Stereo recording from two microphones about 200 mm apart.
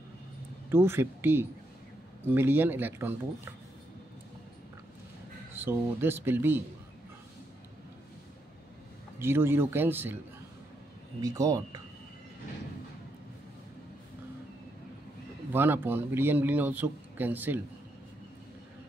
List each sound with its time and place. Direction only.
0.7 s speech: 10° right (ahead or behind)
5.5 s speech: 10° right (ahead or behind)
9.2 s speech: 10° right (ahead or behind)
11.1 s speech: 15° right (ahead or behind)
15.5 s speech: 10° right (ahead or behind)